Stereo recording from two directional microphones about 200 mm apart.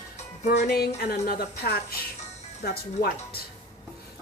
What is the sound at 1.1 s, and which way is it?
A woman's voice, 45° left (ahead or behind).